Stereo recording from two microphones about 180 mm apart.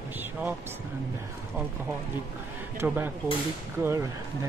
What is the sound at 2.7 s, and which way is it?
Speech, 10° right (ahead or behind).